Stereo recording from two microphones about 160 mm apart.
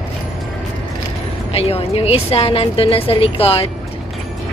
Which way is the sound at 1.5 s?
40° left (ahead or behind).